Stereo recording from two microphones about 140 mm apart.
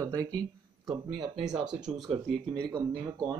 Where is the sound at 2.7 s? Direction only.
25° right (ahead or behind).